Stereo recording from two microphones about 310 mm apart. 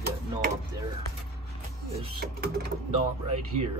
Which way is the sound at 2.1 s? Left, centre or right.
Right.